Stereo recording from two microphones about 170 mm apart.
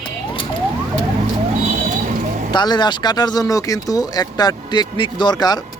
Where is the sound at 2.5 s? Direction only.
25° left (ahead or behind).